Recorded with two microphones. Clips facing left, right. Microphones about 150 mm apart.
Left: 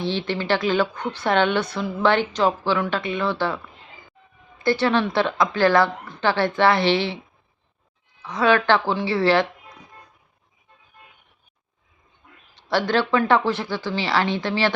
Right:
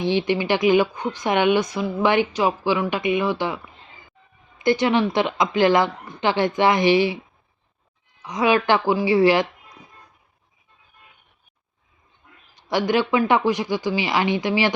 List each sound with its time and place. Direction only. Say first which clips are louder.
0.0 s a woman's voice: right 4 dB; 15° right (ahead or behind)
8.2 s a woman's voice: even; 15° right (ahead or behind)
12.6 s a woman's voice: right 1 dB; 15° right (ahead or behind)